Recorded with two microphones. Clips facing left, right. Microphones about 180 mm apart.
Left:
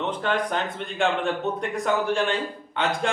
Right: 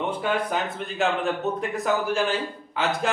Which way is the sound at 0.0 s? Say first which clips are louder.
Even; 10° right (ahead or behind).